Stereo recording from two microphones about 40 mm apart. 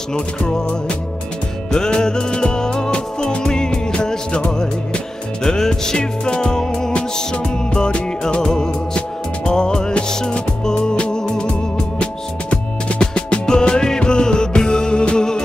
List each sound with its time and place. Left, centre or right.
0.1 s music: left
5.4 s music: centre